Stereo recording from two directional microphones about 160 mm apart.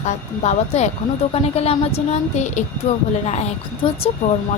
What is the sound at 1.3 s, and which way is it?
A woman's voice, 40° left (ahead or behind).